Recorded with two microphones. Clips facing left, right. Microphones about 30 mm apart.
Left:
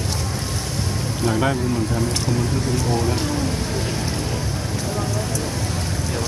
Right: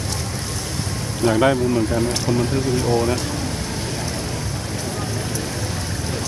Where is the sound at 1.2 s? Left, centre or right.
Centre.